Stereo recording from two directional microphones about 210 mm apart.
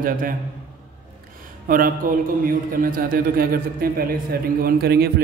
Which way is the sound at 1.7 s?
40° right (ahead or behind).